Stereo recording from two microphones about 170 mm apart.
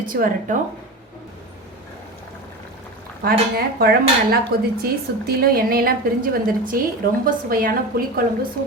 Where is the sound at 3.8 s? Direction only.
65° right (ahead or behind).